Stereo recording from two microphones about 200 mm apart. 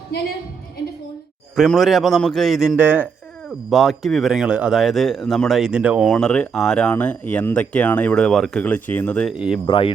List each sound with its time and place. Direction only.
1.5 s a man's voice: centre (ahead or behind)
9.3 s a man's voice: 5° right (ahead or behind)
9.6 s speech: 25° left (ahead or behind)